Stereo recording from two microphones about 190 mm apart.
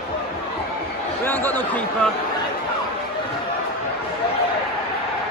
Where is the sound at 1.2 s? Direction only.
10° left (ahead or behind).